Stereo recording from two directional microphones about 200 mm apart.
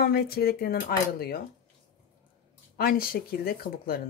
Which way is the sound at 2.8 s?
45° left (ahead or behind).